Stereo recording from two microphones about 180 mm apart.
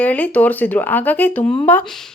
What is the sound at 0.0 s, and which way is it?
Speech, 10° left (ahead or behind).